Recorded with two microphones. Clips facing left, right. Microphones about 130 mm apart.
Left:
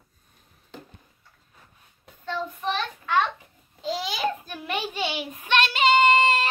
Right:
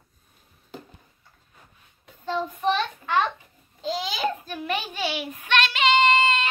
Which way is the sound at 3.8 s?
5° left (ahead or behind).